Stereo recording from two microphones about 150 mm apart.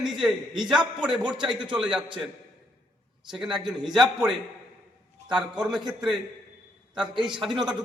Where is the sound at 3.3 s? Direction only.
5° right (ahead or behind).